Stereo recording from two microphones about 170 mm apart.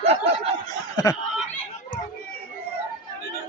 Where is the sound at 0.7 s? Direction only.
20° left (ahead or behind).